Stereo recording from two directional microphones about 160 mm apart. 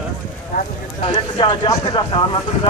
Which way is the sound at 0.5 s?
55° left (ahead or behind).